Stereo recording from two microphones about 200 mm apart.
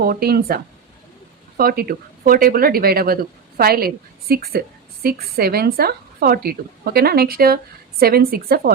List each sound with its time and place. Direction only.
0.0 s speech: 50° right (ahead or behind)